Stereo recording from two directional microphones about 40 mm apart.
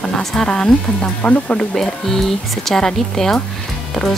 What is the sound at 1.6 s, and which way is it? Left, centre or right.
Speech, centre.